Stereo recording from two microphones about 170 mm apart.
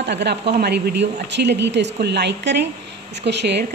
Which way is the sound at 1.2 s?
90° right.